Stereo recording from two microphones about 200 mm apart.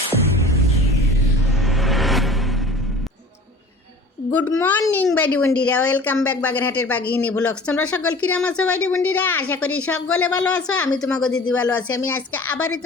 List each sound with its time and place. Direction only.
1.5 s music: centre (ahead or behind)
4.3 s a child's voice: 10° left (ahead or behind)
8.7 s a woman's voice: 90° left
9.0 s a woman's voice: 10° left (ahead or behind)